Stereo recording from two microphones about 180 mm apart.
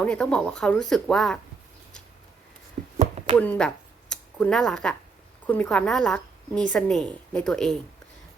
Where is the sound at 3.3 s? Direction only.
10° left (ahead or behind).